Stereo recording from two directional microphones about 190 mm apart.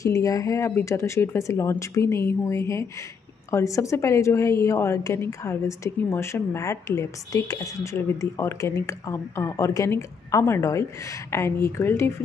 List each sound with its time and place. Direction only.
0.0 s a woman's voice: 15° left (ahead or behind)